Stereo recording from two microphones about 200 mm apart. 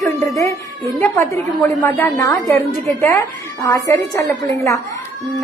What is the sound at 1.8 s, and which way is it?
A woman's voice, 10° left (ahead or behind).